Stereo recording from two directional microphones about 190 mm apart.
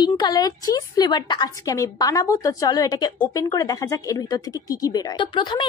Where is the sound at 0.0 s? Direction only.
20° left (ahead or behind).